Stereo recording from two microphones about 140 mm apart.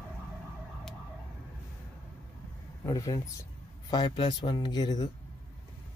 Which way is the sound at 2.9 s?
25° left (ahead or behind).